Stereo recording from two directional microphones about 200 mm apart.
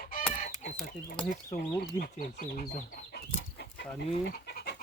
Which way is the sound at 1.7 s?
50° left (ahead or behind).